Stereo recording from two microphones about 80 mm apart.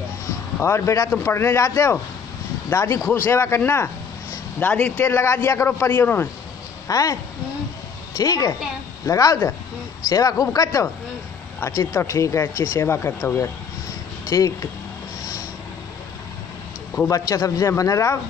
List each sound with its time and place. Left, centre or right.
0.6 s a man's voice: left; by 5.1 s centre
5.1 s speech: left
6.9 s speech: left
8.2 s speech: left
17.0 s a man's voice: left
17.3 s speech: left